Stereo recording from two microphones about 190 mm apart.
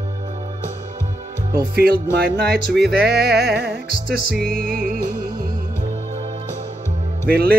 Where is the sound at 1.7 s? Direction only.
55° right (ahead or behind).